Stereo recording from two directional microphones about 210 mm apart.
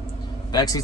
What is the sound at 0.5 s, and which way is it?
Speech, 15° left (ahead or behind).